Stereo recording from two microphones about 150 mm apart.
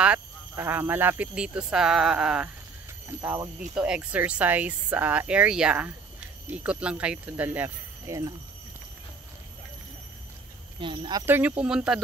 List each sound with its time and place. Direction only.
0.0 s speech: 10° right (ahead or behind)
3.1 s speech: 20° right (ahead or behind)
3.7 s speech: 5° right (ahead or behind)
10.8 s speech: 35° right (ahead or behind)
11.2 s speech: 10° right (ahead or behind)